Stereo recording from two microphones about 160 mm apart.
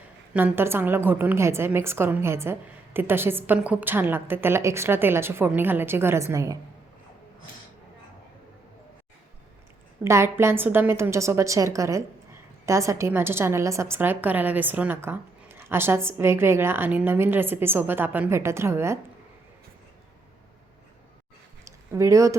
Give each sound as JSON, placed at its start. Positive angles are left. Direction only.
{"t": 0.3, "sound": "a woman's voice", "side_deg": -10}
{"t": 10.0, "sound": "a woman's voice", "side_deg": -15}
{"t": 21.6, "sound": "a sound", "side_deg": -20}